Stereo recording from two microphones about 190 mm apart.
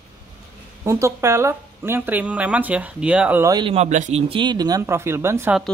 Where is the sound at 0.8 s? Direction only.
15° right (ahead or behind).